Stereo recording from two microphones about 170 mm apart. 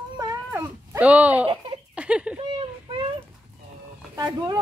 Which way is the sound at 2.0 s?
5° right (ahead or behind).